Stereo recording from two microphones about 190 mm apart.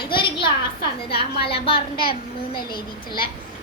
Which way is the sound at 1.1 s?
55° left (ahead or behind).